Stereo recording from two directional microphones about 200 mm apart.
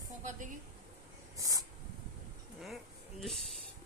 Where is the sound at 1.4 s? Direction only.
15° right (ahead or behind).